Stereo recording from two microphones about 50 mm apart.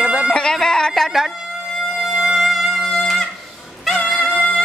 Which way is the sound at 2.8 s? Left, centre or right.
Centre.